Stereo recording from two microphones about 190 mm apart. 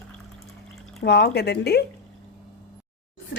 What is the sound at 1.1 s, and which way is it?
Speech, 60° left (ahead or behind).